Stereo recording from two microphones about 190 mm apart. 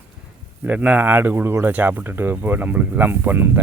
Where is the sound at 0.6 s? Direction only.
5° right (ahead or behind).